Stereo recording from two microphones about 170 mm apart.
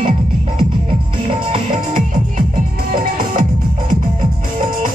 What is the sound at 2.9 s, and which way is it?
Music, 60° right (ahead or behind).